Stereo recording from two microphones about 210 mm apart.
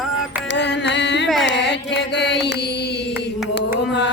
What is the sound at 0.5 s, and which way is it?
Mantra, 55° left (ahead or behind).